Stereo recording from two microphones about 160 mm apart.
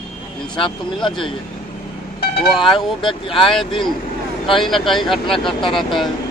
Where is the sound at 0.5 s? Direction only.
30° left (ahead or behind).